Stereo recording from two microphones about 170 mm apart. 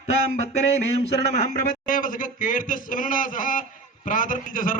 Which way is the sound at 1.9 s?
55° left (ahead or behind).